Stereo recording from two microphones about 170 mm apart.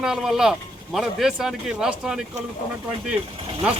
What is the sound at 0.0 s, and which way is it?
Speech, centre (ahead or behind).